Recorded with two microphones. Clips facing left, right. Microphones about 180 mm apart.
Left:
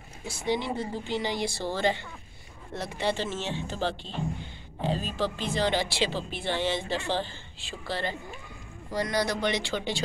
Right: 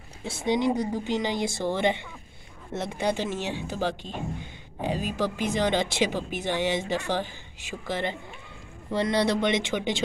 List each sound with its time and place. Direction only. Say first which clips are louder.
0.5 s speech: right 5 dB; 15° right (ahead or behind)